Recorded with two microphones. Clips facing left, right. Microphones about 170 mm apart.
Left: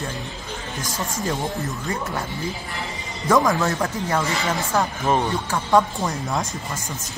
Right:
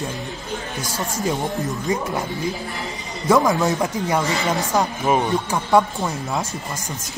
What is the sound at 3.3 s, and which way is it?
Speech, 10° right (ahead or behind).